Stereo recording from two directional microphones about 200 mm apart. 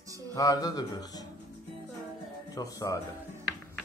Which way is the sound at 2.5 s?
15° left (ahead or behind).